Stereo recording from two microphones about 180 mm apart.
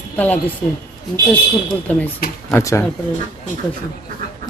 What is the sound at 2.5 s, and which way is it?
Speech, 15° left (ahead or behind).